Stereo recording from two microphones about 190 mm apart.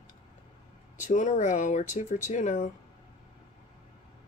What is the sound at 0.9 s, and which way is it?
Speech, 40° left (ahead or behind).